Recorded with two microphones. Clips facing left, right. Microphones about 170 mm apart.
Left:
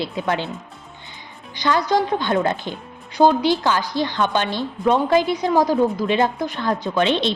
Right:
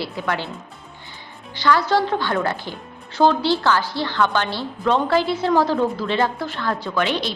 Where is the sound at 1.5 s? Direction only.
20° left (ahead or behind).